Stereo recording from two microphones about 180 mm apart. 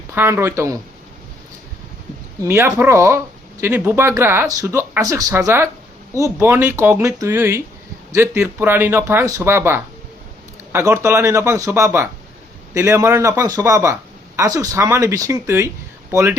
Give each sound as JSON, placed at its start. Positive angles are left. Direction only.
{"t": 0.1, "sound": "speech", "side_deg": -15}
{"t": 2.4, "sound": "speech", "side_deg": -15}